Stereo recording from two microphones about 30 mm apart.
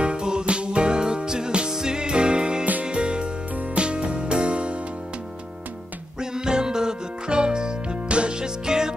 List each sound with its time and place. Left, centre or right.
0.0 s music: right
6.1 s music: right
8.4 s music: right